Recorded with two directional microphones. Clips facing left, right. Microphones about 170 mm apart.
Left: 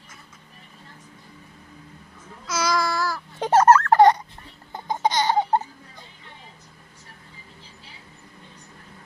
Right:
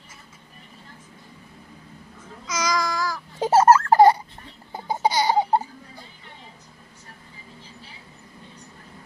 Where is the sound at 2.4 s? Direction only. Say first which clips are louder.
Left 1 dB; 5° left (ahead or behind).